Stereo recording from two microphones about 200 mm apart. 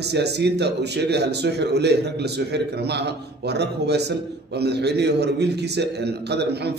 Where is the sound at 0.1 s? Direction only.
55° right (ahead or behind).